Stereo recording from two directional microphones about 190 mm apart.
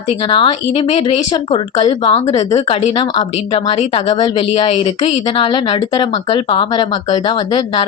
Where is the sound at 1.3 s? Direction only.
25° left (ahead or behind).